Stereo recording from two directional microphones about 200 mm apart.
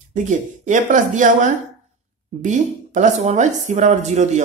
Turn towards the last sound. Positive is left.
turn(degrees=-35)  # may be behind; listen again after turning